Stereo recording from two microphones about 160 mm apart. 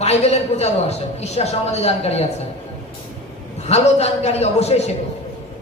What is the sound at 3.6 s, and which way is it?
A man's voice, 40° left (ahead or behind).